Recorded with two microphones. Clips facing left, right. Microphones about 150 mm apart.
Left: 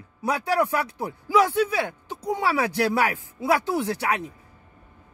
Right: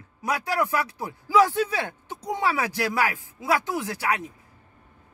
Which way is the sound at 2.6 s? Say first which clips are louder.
Left 3 dB; 25° left (ahead or behind).